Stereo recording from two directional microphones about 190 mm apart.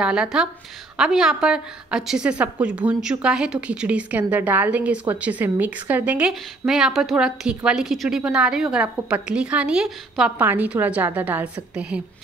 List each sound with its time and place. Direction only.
0.0 s a woman's voice: 5° right (ahead or behind)